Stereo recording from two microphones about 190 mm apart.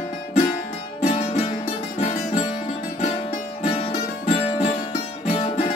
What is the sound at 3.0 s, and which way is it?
Music, 30° left (ahead or behind).